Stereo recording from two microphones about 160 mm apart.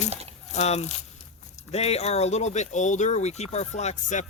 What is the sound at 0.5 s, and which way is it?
Speech, 45° left (ahead or behind).